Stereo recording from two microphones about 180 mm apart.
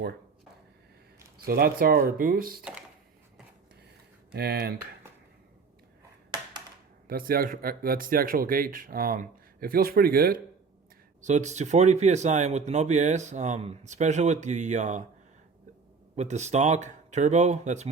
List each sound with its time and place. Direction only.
1.5 s speech: 55° right (ahead or behind)
4.4 s speech: 65° right (ahead or behind)
7.1 s speech: 55° right (ahead or behind)
11.2 s speech: 40° right (ahead or behind)
16.1 s speech: 40° right (ahead or behind)